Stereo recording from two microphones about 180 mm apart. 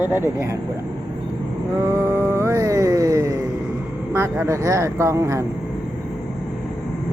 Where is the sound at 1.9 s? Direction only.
15° right (ahead or behind).